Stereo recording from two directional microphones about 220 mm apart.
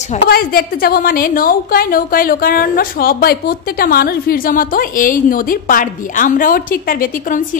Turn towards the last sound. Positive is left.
turn(degrees=40)  # may be behind; listen again after turning